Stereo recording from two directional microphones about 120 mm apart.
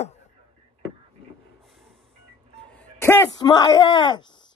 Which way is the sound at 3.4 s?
35° left (ahead or behind).